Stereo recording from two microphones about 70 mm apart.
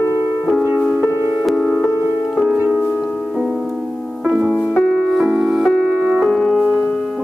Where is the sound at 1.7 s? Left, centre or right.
Left.